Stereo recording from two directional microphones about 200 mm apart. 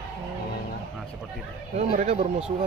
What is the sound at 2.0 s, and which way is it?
Speech, 35° right (ahead or behind).